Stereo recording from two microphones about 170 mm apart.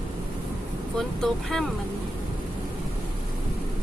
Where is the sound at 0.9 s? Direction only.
Centre (ahead or behind).